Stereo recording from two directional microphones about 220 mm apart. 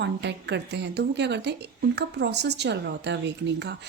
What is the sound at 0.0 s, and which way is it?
A woman's voice, 50° right (ahead or behind).